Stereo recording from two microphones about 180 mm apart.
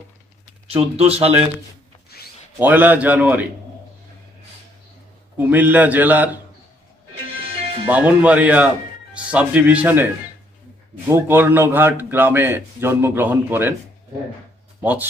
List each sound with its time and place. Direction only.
0.7 s speech: 35° right (ahead or behind)
2.0 s a sound: 60° left (ahead or behind)
2.6 s a man's voice: 10° right (ahead or behind)
5.4 s a man's voice: 10° right (ahead or behind)
7.9 s a man's voice: 10° right (ahead or behind)
11.1 s a man's voice: 15° right (ahead or behind)
14.8 s speech: 10° right (ahead or behind)